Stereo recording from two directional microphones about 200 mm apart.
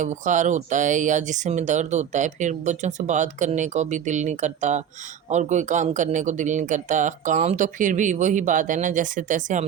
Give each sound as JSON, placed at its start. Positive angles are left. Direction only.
{"t": 0.0, "sound": "speech", "side_deg": -40}